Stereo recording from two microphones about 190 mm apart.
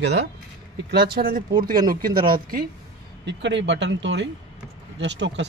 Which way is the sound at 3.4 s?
70° right (ahead or behind).